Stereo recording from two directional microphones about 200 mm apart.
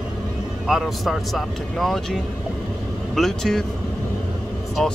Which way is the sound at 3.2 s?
Centre (ahead or behind).